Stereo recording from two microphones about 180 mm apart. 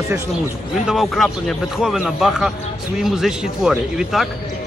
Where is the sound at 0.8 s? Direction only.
Centre (ahead or behind).